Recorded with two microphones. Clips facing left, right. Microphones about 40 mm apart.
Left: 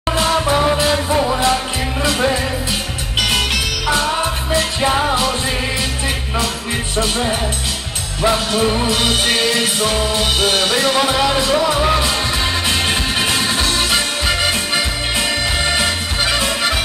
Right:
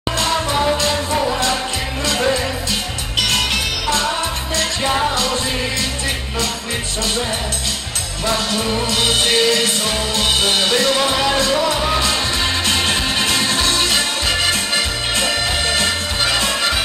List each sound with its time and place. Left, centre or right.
0.1 s music: centre
7.0 s music: centre
8.5 s music: centre